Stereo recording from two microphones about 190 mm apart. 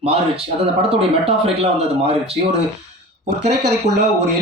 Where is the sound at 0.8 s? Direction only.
30° right (ahead or behind).